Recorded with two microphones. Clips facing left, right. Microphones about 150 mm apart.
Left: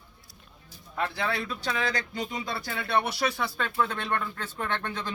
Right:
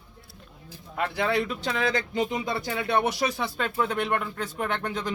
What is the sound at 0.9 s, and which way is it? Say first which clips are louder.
Speech: right 4 dB; 15° right (ahead or behind).